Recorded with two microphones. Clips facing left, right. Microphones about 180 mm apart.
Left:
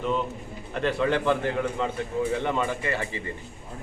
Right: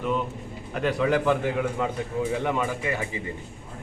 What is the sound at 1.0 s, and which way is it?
A man's voice, 5° right (ahead or behind).